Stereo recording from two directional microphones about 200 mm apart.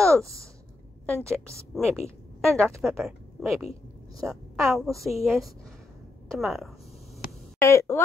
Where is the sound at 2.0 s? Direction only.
15° right (ahead or behind).